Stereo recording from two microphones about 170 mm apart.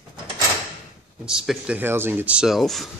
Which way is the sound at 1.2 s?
5° right (ahead or behind).